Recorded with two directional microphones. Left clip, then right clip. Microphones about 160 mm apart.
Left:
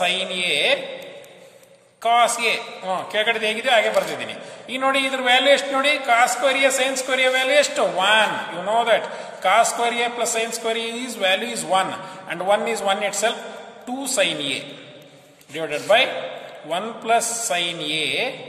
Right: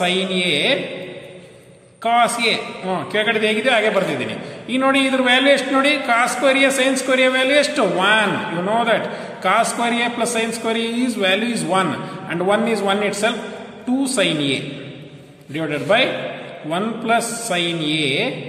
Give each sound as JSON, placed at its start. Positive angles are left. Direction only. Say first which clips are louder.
{"t": 0.0, "sound": "a man's voice", "louder": "right 2 dB", "side_deg": 40}
{"t": 2.0, "sound": "a man's voice", "louder": "right 1 dB", "side_deg": 40}